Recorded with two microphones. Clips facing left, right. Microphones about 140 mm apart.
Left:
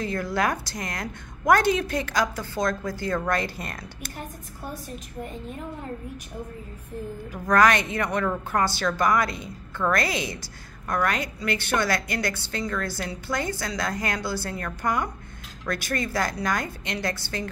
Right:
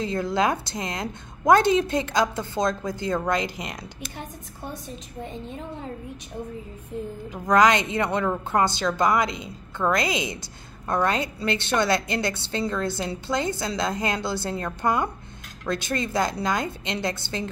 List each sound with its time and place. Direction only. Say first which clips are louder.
0.0 s a woman's voice: right 2 dB; 25° right (ahead or behind)
7.4 s a woman's voice: right 1 dB; 20° right (ahead or behind)